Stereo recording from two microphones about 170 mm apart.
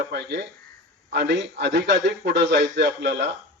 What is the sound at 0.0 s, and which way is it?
A man's voice, 90° right.